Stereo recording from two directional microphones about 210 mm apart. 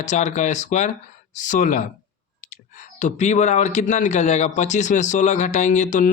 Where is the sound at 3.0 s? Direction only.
35° left (ahead or behind).